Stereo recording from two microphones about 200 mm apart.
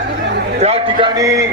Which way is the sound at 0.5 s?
30° right (ahead or behind).